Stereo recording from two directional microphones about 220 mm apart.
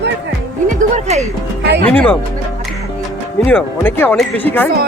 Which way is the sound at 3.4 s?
5° left (ahead or behind).